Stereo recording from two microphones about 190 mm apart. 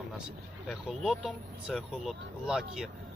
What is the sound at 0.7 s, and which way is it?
Speech, centre (ahead or behind).